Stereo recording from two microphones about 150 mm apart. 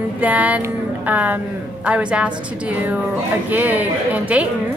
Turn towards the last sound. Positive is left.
turn(degrees=-10)  # may be behind; listen again after turning